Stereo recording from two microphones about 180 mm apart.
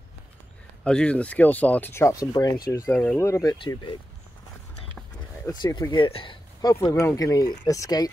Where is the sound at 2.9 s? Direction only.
5° left (ahead or behind).